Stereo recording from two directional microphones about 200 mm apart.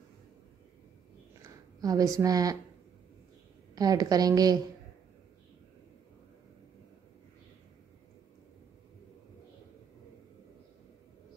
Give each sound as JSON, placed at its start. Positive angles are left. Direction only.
{"t": 1.8, "sound": "a woman's voice", "side_deg": -20}
{"t": 3.7, "sound": "a woman's voice", "side_deg": -20}